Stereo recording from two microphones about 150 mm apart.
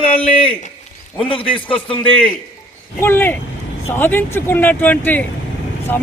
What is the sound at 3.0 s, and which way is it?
Speech, 15° left (ahead or behind).